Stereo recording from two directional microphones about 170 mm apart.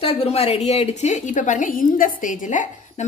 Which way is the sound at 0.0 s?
35° left (ahead or behind).